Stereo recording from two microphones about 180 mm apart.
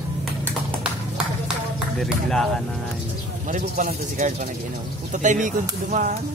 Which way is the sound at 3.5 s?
45° right (ahead or behind).